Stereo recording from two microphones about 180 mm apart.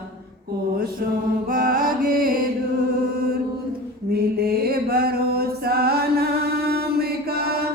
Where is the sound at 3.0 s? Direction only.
55° right (ahead or behind).